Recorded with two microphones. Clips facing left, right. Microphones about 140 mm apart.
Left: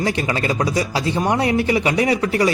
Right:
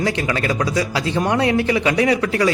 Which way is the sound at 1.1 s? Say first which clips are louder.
Right 1 dB; 10° left (ahead or behind).